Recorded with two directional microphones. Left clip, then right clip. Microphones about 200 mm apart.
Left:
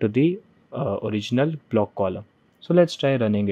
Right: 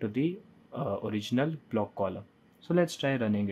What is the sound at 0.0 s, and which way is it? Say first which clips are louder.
Speech: left 11 dB; 35° left (ahead or behind).